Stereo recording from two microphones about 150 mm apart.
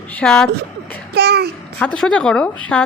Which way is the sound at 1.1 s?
90° right.